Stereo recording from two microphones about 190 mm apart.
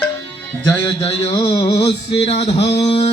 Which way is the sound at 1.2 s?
30° left (ahead or behind).